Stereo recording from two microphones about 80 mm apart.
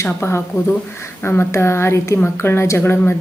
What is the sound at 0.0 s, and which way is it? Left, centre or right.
Speech, left.